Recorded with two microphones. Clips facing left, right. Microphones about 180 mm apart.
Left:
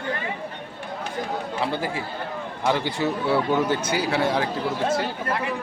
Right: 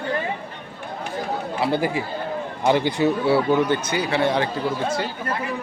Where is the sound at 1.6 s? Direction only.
15° right (ahead or behind).